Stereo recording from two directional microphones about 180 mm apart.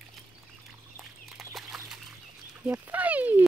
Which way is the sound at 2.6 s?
10° right (ahead or behind).